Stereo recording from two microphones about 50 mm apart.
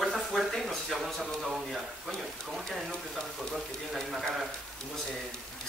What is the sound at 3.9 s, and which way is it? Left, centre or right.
Speech, centre.